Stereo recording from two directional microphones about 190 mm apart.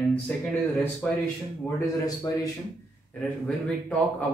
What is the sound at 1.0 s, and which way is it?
Speech, 5° left (ahead or behind).